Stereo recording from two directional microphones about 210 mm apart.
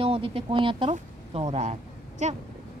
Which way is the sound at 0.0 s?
25° right (ahead or behind).